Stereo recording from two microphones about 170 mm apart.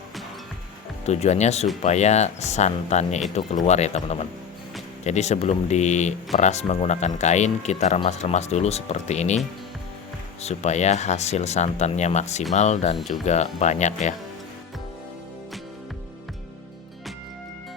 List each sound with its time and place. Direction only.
1.0 s speech: 40° left (ahead or behind)
10.4 s speech: 40° left (ahead or behind)